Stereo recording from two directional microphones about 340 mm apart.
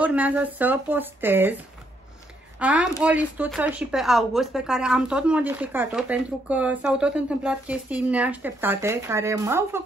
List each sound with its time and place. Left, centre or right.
0.0 s speech: centre
2.6 s speech: centre